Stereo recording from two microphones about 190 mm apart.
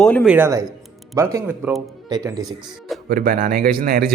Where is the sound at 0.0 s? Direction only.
5° left (ahead or behind).